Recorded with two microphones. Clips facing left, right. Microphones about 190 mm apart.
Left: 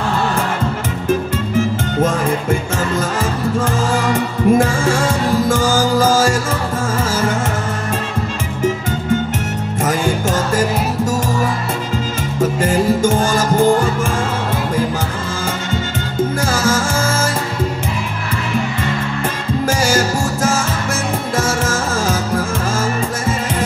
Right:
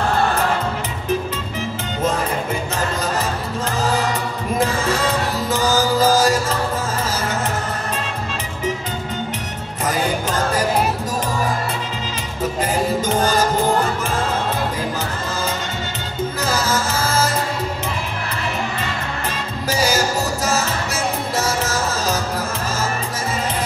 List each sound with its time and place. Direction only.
3.9 s music: 50° left (ahead or behind)
13.0 s music: 50° left (ahead or behind)
16.4 s music: 50° left (ahead or behind)
19.7 s music: 50° left (ahead or behind)
21.4 s music: 50° left (ahead or behind)